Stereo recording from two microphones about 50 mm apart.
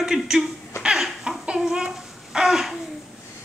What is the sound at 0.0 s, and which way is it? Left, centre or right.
Speech, centre.